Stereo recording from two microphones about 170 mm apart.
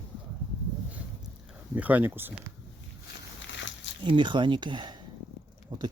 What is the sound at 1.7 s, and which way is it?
Speech, 10° right (ahead or behind).